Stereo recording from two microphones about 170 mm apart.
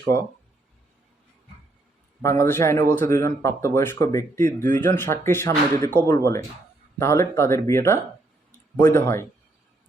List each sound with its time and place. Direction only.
2.2 s speech: 15° left (ahead or behind)